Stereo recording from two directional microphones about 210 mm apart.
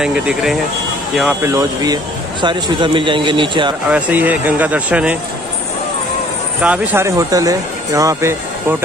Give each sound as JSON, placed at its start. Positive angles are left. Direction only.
{"t": 0.0, "sound": "speech", "side_deg": -5}
{"t": 3.9, "sound": "speech", "side_deg": -10}
{"t": 6.6, "sound": "speech", "side_deg": -5}